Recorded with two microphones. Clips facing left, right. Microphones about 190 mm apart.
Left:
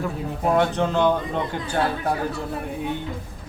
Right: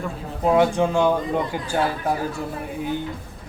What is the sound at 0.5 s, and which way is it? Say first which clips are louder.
A man's voice: right 3 dB; 10° right (ahead or behind).